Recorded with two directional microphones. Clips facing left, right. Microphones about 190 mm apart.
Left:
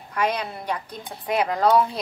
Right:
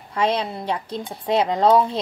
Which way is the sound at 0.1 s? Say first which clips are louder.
Right 3 dB; 25° right (ahead or behind).